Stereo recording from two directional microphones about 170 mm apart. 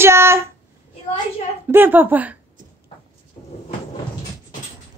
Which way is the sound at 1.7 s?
10° right (ahead or behind).